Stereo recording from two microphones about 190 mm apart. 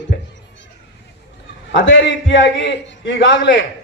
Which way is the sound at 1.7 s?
70° left (ahead or behind).